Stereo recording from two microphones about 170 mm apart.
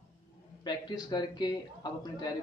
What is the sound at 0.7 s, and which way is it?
A man's voice, 25° left (ahead or behind).